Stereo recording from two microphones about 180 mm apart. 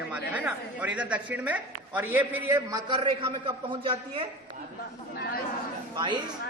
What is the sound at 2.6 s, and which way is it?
A man's voice, 25° right (ahead or behind).